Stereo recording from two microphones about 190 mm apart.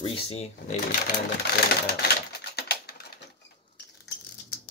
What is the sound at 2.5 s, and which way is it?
Typing, 55° left (ahead or behind).